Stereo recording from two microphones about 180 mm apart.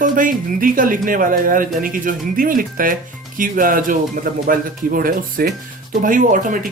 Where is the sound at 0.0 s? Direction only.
50° right (ahead or behind).